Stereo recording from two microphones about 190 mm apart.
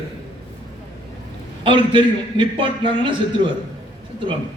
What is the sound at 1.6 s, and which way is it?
A man's voice, 25° right (ahead or behind).